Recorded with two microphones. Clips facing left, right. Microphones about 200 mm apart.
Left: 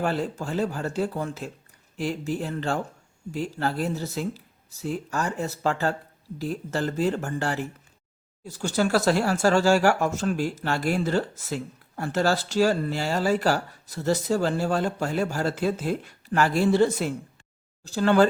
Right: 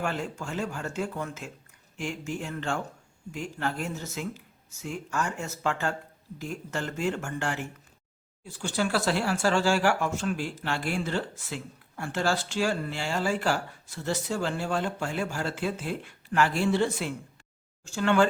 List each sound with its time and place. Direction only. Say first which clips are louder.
0.0 s speech: left 5 dB; 35° left (ahead or behind)